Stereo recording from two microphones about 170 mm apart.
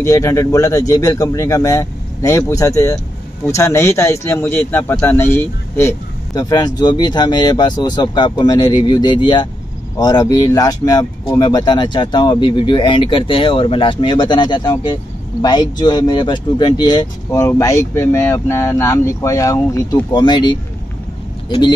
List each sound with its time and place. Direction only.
0.0 s a man's voice: 20° left (ahead or behind)